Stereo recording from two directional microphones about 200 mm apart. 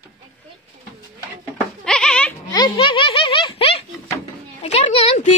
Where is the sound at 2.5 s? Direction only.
20° left (ahead or behind).